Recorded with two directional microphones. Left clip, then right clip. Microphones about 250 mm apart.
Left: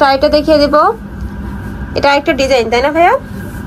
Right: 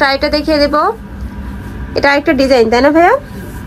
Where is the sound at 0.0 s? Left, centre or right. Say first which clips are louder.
Left 3 dB; centre.